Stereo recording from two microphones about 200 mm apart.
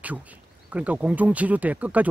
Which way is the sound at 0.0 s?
5° right (ahead or behind).